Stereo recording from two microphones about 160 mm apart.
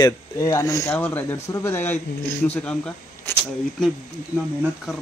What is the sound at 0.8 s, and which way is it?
Speech, 10° left (ahead or behind).